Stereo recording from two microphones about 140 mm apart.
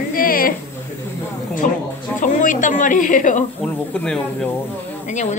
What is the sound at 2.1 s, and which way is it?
Speech, 65° left (ahead or behind).